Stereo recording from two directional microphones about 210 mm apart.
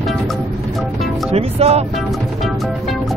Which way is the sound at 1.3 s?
30° right (ahead or behind).